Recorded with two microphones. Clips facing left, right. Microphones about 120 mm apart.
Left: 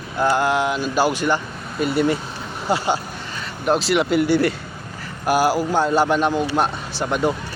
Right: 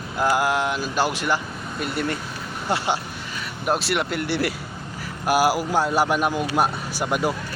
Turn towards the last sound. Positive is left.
turn(degrees=-10)  # may be behind; listen again after turning